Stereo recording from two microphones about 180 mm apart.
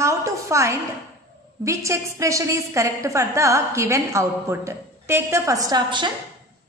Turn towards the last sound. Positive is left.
turn(degrees=-25)  # may be behind; listen again after turning